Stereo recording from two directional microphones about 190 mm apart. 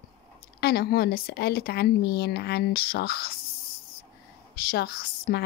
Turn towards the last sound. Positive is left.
turn(degrees=55)  # may be behind; listen again after turning